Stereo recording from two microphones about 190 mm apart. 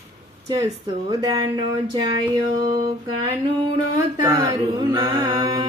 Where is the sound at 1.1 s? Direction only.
20° right (ahead or behind).